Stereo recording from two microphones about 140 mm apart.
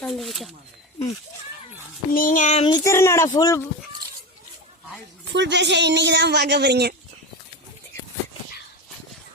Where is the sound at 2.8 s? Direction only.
20° left (ahead or behind).